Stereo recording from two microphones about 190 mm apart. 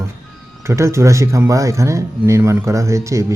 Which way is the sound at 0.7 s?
15° right (ahead or behind).